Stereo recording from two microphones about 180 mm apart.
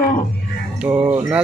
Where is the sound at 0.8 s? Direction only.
10° right (ahead or behind).